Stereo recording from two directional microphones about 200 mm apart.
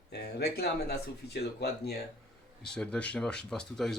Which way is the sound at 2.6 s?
5° left (ahead or behind).